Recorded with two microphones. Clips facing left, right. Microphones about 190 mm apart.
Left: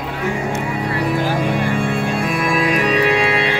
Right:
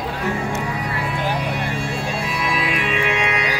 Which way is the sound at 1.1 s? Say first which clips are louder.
Left 5 dB; 45° left (ahead or behind).